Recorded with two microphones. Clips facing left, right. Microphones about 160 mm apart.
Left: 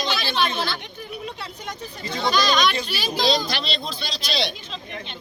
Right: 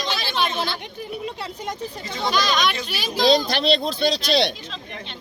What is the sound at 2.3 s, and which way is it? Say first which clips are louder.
Speech: left 1 dB; 15° right (ahead or behind).